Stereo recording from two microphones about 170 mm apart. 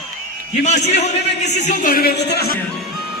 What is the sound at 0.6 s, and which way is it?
A man's voice, 40° left (ahead or behind).